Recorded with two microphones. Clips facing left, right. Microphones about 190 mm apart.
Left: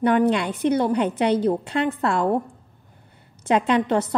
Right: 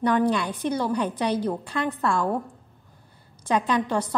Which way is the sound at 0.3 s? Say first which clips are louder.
Left 4 dB; 20° left (ahead or behind).